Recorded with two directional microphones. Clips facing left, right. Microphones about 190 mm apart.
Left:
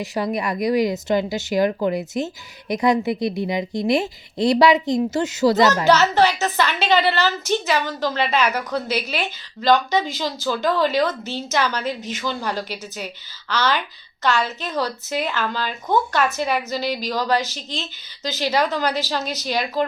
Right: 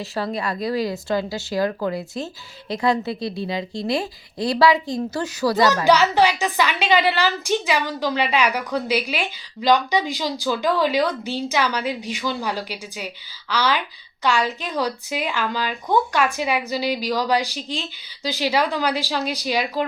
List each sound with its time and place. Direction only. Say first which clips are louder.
0.0 s speech: left 2 dB; 15° left (ahead or behind)
5.8 s a woman's voice: even; 10° right (ahead or behind)